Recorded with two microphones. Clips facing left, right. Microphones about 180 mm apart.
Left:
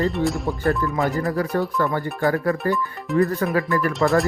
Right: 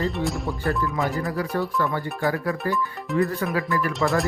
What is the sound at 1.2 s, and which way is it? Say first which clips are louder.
Speech: left 3 dB; 40° left (ahead or behind).